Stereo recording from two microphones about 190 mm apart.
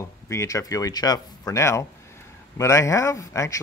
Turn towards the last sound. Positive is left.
turn(degrees=15)  # may be behind; listen again after turning